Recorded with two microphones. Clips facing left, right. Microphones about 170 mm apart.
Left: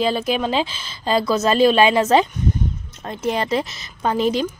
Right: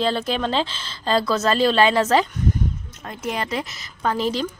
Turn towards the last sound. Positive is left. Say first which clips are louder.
# left 3 dB
turn(degrees=15)  # may be behind; listen again after turning